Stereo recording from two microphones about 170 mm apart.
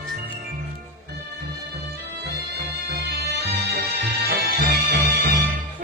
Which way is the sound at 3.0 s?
75° right (ahead or behind).